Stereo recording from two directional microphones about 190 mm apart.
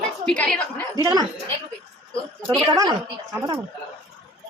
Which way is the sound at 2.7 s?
20° right (ahead or behind).